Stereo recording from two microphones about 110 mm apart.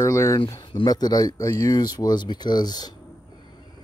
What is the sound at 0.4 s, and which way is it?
Speech, 40° left (ahead or behind).